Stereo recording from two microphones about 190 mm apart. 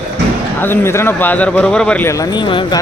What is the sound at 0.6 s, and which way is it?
Speech, 10° left (ahead or behind).